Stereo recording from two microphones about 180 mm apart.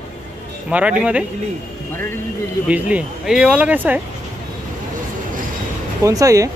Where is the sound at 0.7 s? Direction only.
10° right (ahead or behind).